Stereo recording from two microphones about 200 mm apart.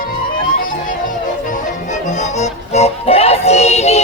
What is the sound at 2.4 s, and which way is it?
Music, 35° left (ahead or behind).